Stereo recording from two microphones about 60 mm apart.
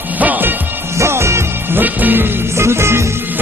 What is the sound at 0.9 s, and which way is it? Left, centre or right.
Music, right.